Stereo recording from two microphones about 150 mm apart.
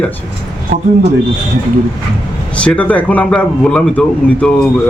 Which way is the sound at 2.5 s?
10° left (ahead or behind).